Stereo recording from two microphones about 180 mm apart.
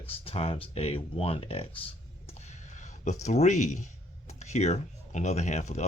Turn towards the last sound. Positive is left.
turn(degrees=40)  # may be behind; listen again after turning